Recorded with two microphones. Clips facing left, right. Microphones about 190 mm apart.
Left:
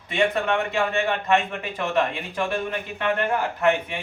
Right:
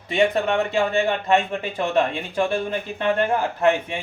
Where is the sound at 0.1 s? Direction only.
30° right (ahead or behind).